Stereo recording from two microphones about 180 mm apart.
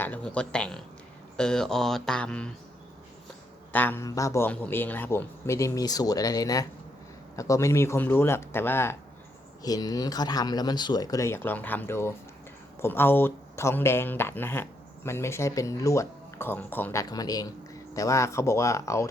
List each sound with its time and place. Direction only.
0.0 s speech: 10° left (ahead or behind)
3.7 s speech: 10° left (ahead or behind)